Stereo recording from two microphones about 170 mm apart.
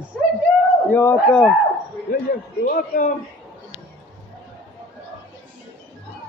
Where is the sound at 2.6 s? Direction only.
50° left (ahead or behind).